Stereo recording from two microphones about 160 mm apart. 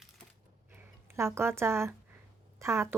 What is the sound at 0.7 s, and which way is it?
Speech, 15° right (ahead or behind).